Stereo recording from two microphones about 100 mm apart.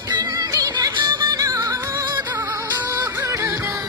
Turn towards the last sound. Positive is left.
turn(degrees=-30)  # may be behind; listen again after turning